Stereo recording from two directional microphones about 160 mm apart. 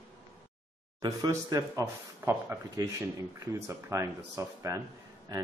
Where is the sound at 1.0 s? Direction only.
25° right (ahead or behind).